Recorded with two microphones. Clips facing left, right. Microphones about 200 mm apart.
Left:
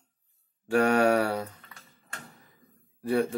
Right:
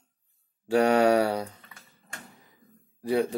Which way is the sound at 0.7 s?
20° right (ahead or behind).